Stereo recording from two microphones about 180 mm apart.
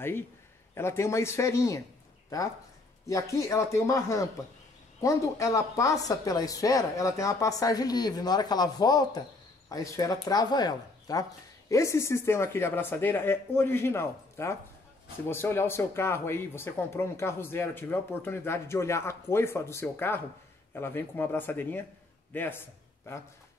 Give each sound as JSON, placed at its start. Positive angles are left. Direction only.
{"t": 0.7, "sound": "speech", "side_deg": 15}
{"t": 3.1, "sound": "a man's voice", "side_deg": 15}